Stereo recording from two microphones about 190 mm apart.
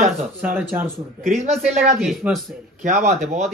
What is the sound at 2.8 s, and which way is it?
Speech, 35° right (ahead or behind).